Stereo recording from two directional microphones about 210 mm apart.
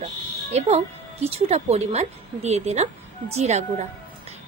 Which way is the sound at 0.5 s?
30° right (ahead or behind).